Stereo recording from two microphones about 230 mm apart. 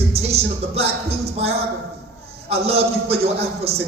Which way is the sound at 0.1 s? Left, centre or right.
Right.